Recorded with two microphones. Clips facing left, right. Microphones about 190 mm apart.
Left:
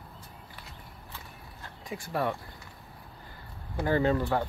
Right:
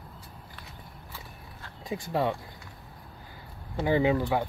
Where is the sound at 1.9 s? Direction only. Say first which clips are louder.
Right 3 dB; 20° right (ahead or behind).